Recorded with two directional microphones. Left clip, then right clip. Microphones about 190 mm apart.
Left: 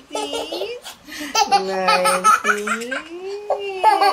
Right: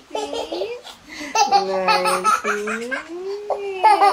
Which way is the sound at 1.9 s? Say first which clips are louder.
Left 5 dB; 30° left (ahead or behind).